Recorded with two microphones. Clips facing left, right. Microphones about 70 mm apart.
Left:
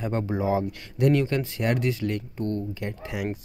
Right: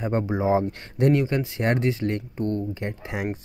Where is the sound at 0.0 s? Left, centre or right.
Right.